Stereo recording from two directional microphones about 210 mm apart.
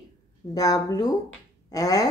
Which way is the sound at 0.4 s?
20° left (ahead or behind).